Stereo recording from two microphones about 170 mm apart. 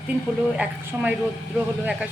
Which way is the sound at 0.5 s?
10° right (ahead or behind).